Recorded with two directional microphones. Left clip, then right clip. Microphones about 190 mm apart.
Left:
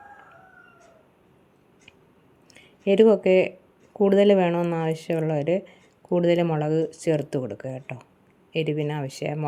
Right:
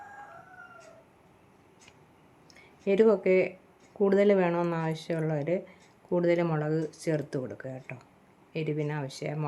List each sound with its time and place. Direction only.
2.8 s speech: 25° left (ahead or behind)
4.5 s speech: 10° left (ahead or behind)
4.9 s speech: 25° left (ahead or behind)